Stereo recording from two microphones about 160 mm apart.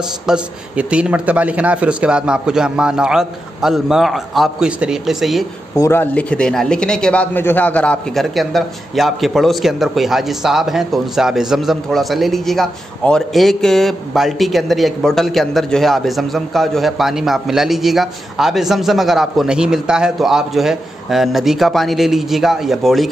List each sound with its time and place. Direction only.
0.3 s a man's voice: 5° right (ahead or behind)
5.8 s a man's voice: 15° left (ahead or behind); by 23.0 s centre (ahead or behind)